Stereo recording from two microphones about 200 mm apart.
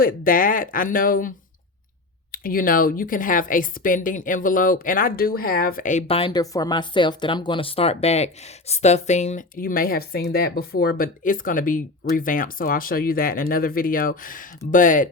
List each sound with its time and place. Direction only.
0.0 s a woman's voice: 45° left (ahead or behind)
2.3 s a woman's voice: 45° left (ahead or behind)